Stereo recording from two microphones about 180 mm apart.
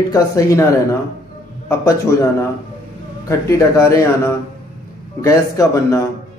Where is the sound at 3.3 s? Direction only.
15° left (ahead or behind).